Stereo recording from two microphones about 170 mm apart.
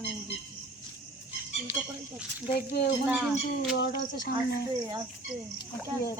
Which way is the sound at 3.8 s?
85° left.